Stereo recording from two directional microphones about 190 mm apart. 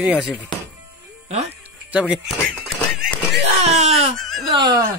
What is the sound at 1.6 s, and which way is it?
Music, 5° right (ahead or behind).